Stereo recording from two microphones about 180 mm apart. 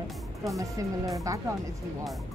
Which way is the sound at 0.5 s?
20° right (ahead or behind).